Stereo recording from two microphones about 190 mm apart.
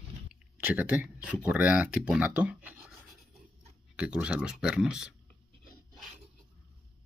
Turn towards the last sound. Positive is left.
turn(degrees=-5)  # may be behind; listen again after turning